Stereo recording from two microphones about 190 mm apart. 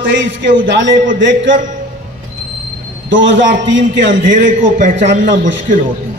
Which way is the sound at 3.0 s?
80° right.